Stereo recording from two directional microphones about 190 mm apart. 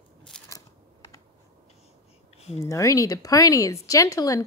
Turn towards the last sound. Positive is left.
turn(degrees=15)  # may be behind; listen again after turning